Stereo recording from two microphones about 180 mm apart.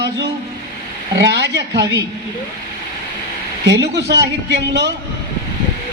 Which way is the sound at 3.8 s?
70° right (ahead or behind).